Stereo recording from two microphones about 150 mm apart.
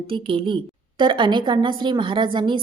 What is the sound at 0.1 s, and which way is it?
A woman's voice, 35° right (ahead or behind).